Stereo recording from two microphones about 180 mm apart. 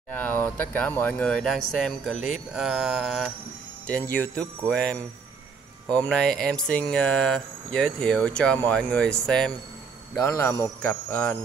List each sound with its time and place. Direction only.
0.1 s speech: 10° left (ahead or behind)
3.8 s speech: 10° left (ahead or behind)